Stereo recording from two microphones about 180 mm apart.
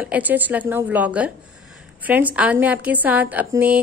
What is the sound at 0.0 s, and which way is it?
A woman's voice, 10° right (ahead or behind).